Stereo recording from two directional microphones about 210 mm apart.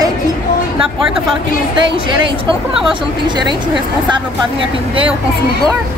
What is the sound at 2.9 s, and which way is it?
Speech, 20° right (ahead or behind).